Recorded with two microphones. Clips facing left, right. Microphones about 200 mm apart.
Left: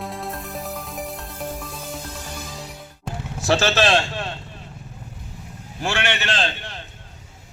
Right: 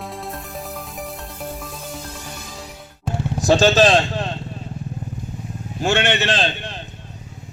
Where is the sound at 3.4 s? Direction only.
15° right (ahead or behind).